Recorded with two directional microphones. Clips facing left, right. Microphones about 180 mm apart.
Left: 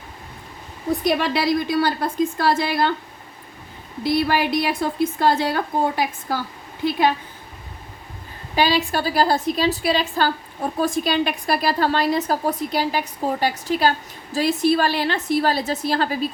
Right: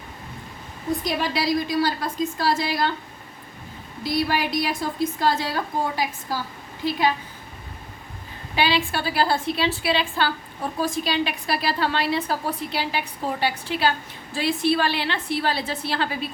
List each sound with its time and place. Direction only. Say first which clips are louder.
1.0 s a woman's voice: left 6 dB; 60° left (ahead or behind)
4.0 s a woman's voice: left 4 dB; 55° left (ahead or behind)
8.5 s a woman's voice: left 3 dB; 40° left (ahead or behind)